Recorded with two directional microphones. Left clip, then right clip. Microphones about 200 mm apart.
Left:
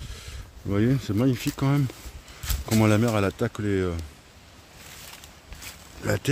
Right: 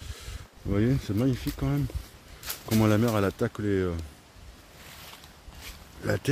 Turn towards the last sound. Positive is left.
turn(degrees=10)  # may be behind; listen again after turning